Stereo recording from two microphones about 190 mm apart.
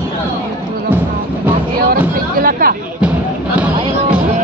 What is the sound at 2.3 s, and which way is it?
Speech, 50° right (ahead or behind).